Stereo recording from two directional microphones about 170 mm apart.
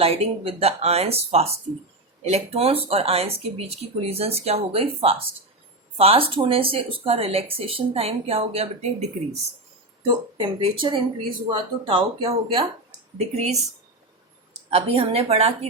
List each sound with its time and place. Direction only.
0.0 s speech: 35° right (ahead or behind)
10.1 s speech: 30° right (ahead or behind)
14.7 s speech: 35° right (ahead or behind)